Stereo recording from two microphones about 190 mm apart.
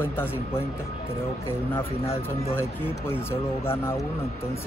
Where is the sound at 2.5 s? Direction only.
10° left (ahead or behind).